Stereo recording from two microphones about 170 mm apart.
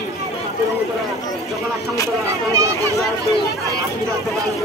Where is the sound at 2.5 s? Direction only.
20° right (ahead or behind).